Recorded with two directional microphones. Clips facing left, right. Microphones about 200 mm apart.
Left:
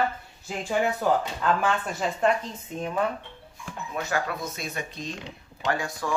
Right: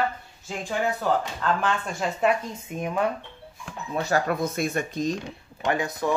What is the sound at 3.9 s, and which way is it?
Speech, 35° right (ahead or behind).